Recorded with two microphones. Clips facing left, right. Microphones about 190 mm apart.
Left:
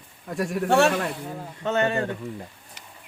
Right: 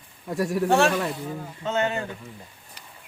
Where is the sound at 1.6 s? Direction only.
60° left (ahead or behind).